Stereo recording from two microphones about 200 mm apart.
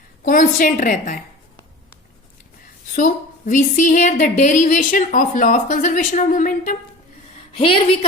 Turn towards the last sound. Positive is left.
turn(degrees=25)  # may be behind; listen again after turning